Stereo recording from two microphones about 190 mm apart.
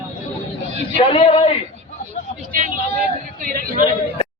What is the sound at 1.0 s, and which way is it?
Speech, 30° left (ahead or behind).